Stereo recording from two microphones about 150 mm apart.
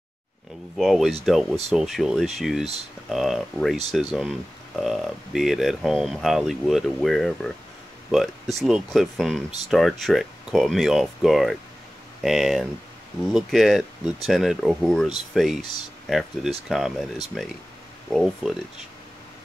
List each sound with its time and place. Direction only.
0.7 s speech: centre (ahead or behind)